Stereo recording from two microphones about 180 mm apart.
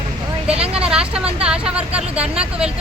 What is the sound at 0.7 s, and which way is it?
Speech, 5° right (ahead or behind).